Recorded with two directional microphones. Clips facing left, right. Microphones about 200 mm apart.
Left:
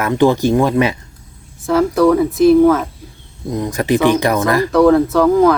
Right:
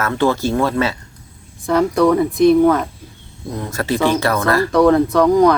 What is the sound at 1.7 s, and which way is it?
Speech, centre (ahead or behind).